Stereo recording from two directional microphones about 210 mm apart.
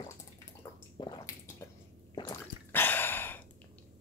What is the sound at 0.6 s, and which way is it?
Bathtub, 20° left (ahead or behind).